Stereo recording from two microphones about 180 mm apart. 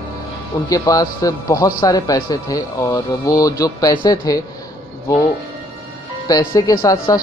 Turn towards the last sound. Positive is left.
turn(degrees=20)  # may be behind; listen again after turning